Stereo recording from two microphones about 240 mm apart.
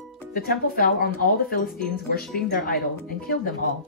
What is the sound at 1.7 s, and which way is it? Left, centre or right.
Speech, centre.